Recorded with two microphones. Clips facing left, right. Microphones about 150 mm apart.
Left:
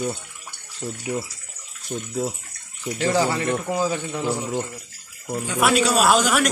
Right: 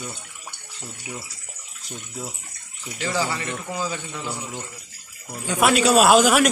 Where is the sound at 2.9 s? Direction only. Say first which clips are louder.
Left 5 dB; 50° left (ahead or behind).